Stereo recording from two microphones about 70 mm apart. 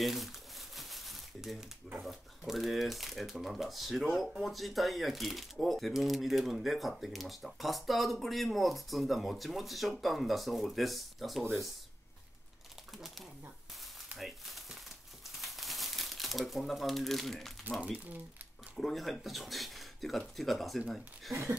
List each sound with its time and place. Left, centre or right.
0.0 s crumpling: centre
2.0 s speech: centre
12.9 s speech: centre
14.1 s a sound: centre
15.3 s crumpling: centre
18.8 s speech: centre
21.3 s a sound: right